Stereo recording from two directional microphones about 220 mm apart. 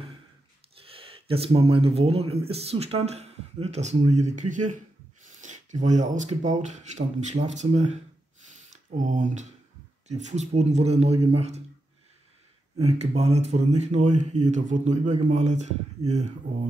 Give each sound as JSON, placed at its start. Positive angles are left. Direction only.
{"t": 0.7, "sound": "speech", "side_deg": -25}
{"t": 12.8, "sound": "speech", "side_deg": -30}